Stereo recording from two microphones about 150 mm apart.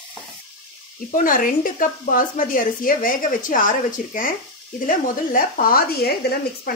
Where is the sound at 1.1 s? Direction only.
65° left (ahead or behind); by 6.1 s 85° left.